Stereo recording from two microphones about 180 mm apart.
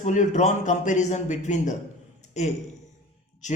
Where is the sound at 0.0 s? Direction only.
45° left (ahead or behind).